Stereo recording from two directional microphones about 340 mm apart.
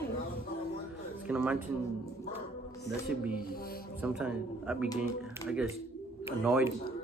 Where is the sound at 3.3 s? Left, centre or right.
Left.